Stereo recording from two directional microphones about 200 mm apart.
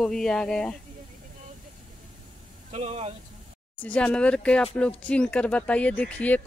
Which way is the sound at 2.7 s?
30° right (ahead or behind).